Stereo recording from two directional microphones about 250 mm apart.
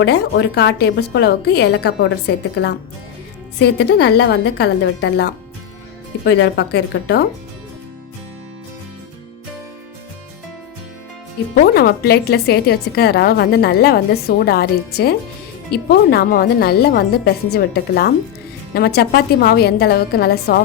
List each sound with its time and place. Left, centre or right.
0.0 s speech: left
11.5 s speech: left